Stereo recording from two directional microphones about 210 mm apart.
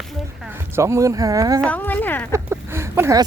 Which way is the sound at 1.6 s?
5° left (ahead or behind).